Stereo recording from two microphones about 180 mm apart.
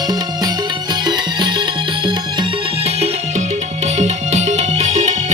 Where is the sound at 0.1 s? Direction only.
20° right (ahead or behind).